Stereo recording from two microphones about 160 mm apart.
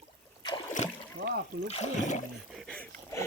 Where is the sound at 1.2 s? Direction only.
70° right (ahead or behind).